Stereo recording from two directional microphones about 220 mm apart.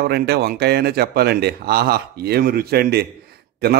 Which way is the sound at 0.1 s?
45° right (ahead or behind).